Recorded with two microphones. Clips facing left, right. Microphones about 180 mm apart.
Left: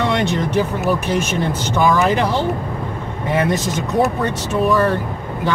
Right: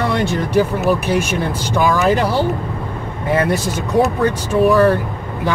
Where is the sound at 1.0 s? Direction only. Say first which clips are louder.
Right 1 dB; 15° right (ahead or behind).